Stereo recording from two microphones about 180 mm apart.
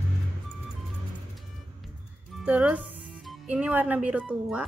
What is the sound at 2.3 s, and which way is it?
Music, 5° right (ahead or behind).